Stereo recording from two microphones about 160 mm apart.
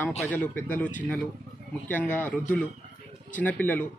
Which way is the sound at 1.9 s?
10° left (ahead or behind).